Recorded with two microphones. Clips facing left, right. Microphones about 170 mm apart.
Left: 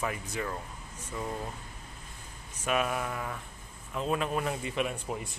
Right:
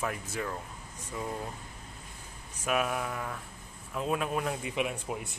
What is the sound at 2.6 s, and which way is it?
Speech, 5° right (ahead or behind).